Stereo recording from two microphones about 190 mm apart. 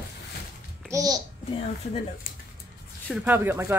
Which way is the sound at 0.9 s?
20° right (ahead or behind).